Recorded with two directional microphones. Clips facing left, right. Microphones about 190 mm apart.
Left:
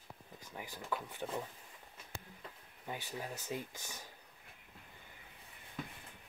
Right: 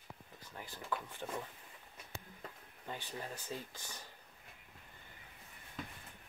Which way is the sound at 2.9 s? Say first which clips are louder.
Left 1 dB; 10° left (ahead or behind).